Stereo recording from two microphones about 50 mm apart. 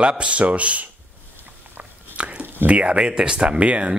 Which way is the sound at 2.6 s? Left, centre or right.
Right.